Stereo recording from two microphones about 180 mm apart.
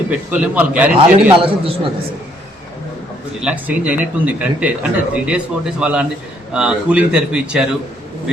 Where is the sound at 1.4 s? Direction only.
30° right (ahead or behind).